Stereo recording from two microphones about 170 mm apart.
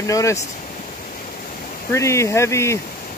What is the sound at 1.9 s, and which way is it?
Speech, 15° left (ahead or behind).